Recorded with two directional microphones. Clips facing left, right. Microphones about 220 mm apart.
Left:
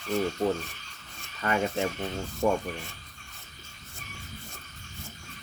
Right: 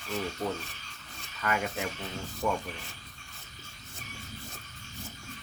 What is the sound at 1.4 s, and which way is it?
Speech, 30° left (ahead or behind).